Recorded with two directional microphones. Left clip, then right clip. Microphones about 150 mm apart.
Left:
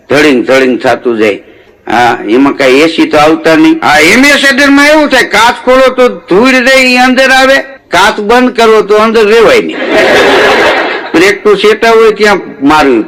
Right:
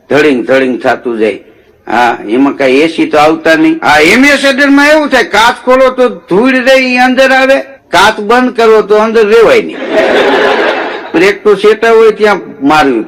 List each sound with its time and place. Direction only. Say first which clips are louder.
0.1 s speech: left 2 dB; 35° left (ahead or behind)